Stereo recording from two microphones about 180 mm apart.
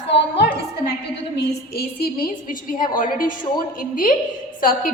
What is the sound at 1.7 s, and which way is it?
A woman's voice, 60° left (ahead or behind).